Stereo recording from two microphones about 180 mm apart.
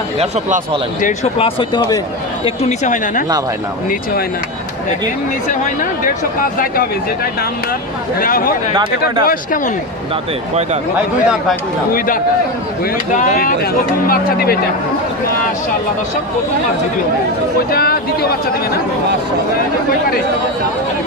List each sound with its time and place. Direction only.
0.2 s speech: 35° right (ahead or behind)
1.0 s speech: 35° left (ahead or behind)
8.2 s speech: 55° left (ahead or behind)
11.9 s speech: 50° left (ahead or behind)
17.7 s speech: 55° left (ahead or behind)